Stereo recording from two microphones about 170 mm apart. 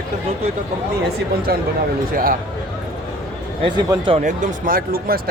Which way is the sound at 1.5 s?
65° right (ahead or behind).